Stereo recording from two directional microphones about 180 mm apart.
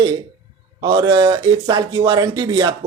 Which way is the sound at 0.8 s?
25° right (ahead or behind).